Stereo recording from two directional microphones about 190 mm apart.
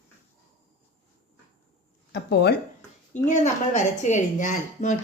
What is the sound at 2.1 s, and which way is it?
Speech, 60° left (ahead or behind).